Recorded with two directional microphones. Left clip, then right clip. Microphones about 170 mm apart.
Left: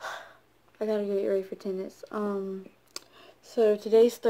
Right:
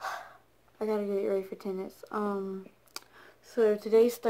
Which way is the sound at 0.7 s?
Centre (ahead or behind).